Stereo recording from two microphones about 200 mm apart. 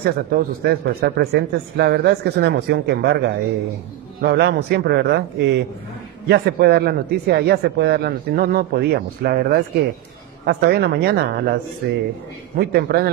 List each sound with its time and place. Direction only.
0.0 s a man's voice: 50° right (ahead or behind)